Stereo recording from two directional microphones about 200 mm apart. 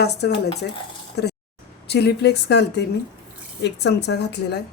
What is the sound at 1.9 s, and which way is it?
Speech, 55° left (ahead or behind).